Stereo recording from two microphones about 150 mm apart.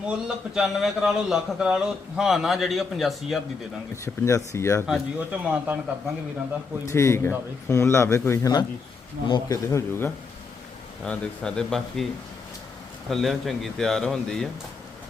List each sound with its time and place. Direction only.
0.5 s a man's voice: centre (ahead or behind)
4.0 s speech: 20° left (ahead or behind)
4.9 s speech: 10° right (ahead or behind)
6.8 s speech: 20° left (ahead or behind)
11.0 s a man's voice: 5° left (ahead or behind)
13.1 s a man's voice: centre (ahead or behind)